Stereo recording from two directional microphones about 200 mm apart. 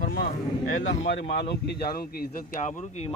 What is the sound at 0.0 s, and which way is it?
Speech, 50° left (ahead or behind).